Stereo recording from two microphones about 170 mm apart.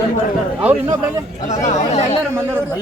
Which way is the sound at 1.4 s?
45° left (ahead or behind).